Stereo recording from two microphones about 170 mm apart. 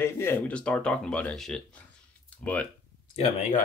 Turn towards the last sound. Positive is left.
turn(degrees=40)  # may be behind; listen again after turning